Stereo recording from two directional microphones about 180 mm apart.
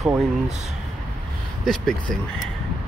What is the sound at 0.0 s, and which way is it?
Speech, 5° right (ahead or behind).